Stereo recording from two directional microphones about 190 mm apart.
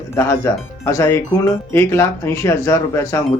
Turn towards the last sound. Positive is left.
turn(degrees=15)  # may be behind; listen again after turning